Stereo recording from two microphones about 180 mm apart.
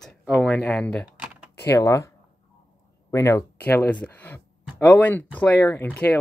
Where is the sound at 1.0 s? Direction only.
5° right (ahead or behind).